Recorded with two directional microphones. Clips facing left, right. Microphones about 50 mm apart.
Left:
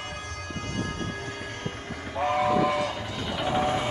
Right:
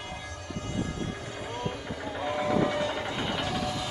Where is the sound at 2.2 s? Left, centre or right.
Left.